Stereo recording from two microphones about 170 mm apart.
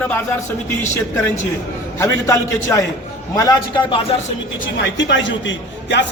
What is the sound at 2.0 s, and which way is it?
A man's voice, 20° left (ahead or behind).